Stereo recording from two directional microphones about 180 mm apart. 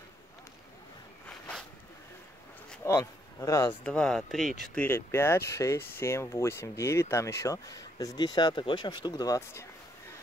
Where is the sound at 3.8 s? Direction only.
5° left (ahead or behind).